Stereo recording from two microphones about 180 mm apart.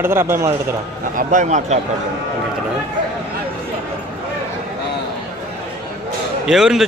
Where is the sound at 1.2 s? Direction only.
40° right (ahead or behind).